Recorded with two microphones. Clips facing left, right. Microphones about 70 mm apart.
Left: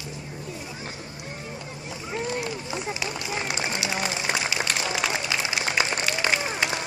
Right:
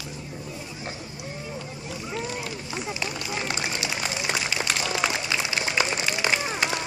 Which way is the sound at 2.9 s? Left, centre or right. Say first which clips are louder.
Even; centre.